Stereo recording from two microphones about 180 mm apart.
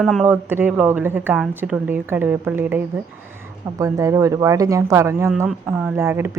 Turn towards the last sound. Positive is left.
turn(degrees=-15)  # may be behind; listen again after turning